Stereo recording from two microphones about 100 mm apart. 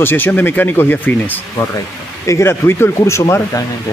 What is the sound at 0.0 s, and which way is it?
Speech, 20° left (ahead or behind).